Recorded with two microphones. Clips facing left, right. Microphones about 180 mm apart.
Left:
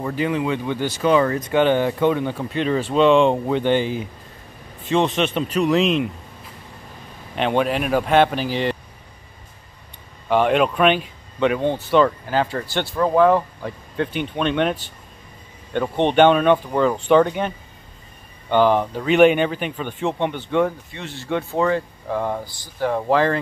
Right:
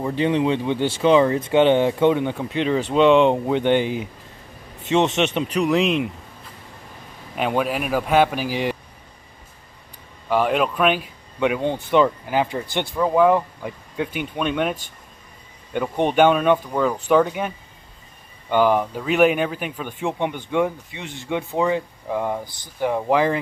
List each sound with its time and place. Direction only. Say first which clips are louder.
0.0 s speech: right 2 dB; 30° right (ahead or behind); by 6.0 s 10° right (ahead or behind)
7.3 s speech: left 2 dB; 5° right (ahead or behind)
10.3 s speech: left 2 dB; 5° right (ahead or behind)
12.9 s speech: left 1 dB; 5° right (ahead or behind)